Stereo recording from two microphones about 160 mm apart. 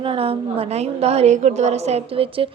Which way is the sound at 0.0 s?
35° right (ahead or behind).